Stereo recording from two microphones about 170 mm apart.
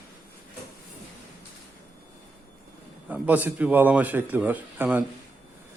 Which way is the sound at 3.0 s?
10° right (ahead or behind).